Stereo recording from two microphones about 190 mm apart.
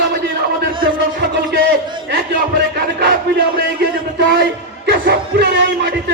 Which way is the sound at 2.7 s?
55° right (ahead or behind).